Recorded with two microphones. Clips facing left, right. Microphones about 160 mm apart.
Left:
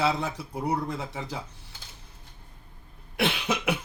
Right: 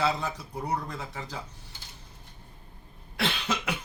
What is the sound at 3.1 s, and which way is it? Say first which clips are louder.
Cough: left 3 dB; 20° left (ahead or behind).